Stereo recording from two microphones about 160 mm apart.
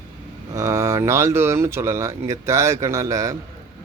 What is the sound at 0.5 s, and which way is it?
A man's voice, 20° right (ahead or behind).